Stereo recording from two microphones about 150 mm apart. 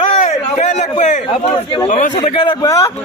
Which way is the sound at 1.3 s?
35° left (ahead or behind).